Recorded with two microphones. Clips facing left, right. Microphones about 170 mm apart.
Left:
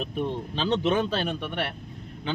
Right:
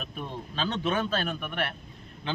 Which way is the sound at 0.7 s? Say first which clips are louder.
Left 6 dB; 20° left (ahead or behind).